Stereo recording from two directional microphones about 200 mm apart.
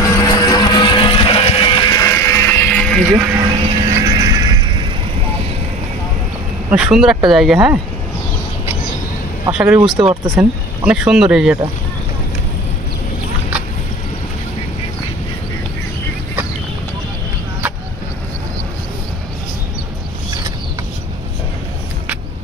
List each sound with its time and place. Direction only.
0.0 s vehicle: 20° left (ahead or behind)
3.3 s music: 15° right (ahead or behind)
6.7 s speech: 5° right (ahead or behind)
9.5 s speech: 10° right (ahead or behind)